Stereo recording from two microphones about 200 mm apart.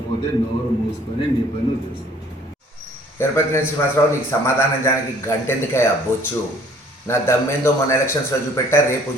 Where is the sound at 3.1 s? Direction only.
10° left (ahead or behind).